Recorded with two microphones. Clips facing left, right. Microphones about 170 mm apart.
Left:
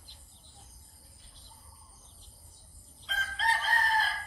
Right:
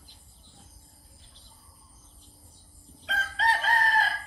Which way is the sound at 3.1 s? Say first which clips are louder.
Right 5 dB; 70° right (ahead or behind).